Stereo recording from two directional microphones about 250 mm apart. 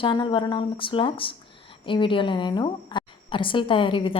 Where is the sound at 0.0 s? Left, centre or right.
Centre.